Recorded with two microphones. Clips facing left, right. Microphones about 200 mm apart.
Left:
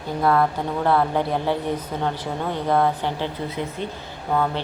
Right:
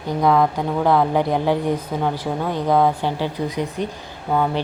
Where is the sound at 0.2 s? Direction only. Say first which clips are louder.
Right 2 dB; 15° right (ahead or behind).